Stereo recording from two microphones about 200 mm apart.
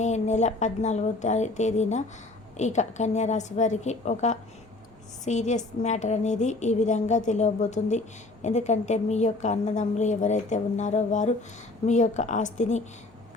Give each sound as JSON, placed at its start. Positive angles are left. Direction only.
{"t": 0.0, "sound": "a woman's voice", "side_deg": 35}